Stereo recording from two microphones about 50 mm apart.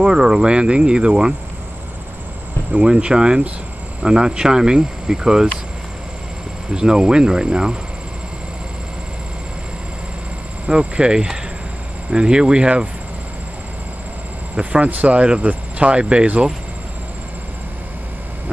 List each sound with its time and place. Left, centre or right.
0.0 s speech: centre
2.7 s speech: right
6.7 s speech: centre
10.7 s speech: centre
14.5 s speech: right